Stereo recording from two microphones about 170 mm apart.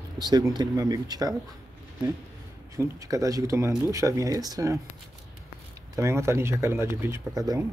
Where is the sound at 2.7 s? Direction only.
20° right (ahead or behind).